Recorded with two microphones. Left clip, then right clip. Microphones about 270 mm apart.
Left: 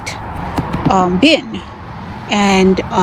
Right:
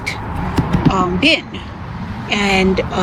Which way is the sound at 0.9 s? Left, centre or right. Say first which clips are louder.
Left 4 dB; centre.